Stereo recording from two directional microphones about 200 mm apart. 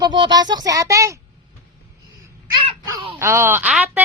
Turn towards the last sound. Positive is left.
turn(degrees=-5)  # may be behind; listen again after turning